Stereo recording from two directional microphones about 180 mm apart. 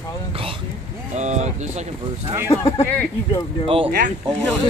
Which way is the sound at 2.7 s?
15° left (ahead or behind).